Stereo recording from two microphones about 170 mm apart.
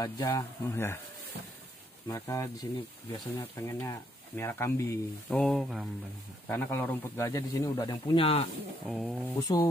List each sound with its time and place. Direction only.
0.0 s speech: 20° left (ahead or behind)
2.0 s speech: 20° left (ahead or behind)
5.3 s a sound: centre (ahead or behind)
6.4 s speech: 10° left (ahead or behind); by 8.5 s 35° left (ahead or behind)
8.8 s a sound: 5° right (ahead or behind)
9.4 s speech: 20° left (ahead or behind)